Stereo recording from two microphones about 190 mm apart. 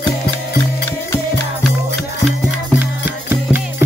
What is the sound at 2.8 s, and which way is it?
Music, 10° right (ahead or behind).